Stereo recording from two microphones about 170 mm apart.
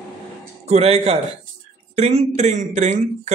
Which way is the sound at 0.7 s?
35° right (ahead or behind).